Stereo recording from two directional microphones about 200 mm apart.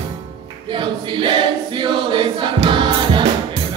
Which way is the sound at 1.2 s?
25° right (ahead or behind).